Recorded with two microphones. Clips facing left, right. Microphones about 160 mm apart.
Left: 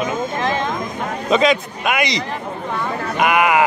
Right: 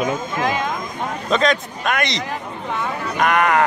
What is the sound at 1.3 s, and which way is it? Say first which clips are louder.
A man's voice: left 3 dB; 5° left (ahead or behind).